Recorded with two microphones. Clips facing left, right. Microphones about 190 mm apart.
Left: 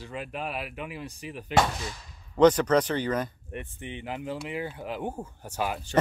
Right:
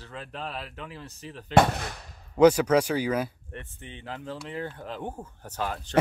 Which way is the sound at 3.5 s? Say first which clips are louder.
Left 5 dB; 15° left (ahead or behind).